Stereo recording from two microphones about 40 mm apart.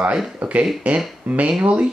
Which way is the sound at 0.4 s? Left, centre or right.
Right.